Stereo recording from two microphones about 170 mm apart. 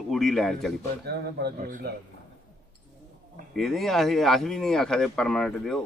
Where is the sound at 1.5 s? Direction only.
55° right (ahead or behind).